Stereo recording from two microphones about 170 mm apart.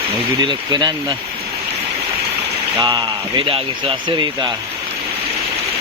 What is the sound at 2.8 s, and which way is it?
Speech, 25° right (ahead or behind).